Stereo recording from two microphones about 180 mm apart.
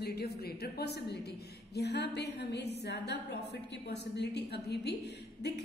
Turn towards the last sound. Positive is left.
turn(degrees=65)  # may be behind; listen again after turning